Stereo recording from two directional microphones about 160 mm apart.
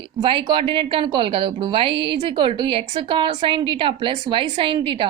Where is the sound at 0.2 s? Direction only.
30° right (ahead or behind).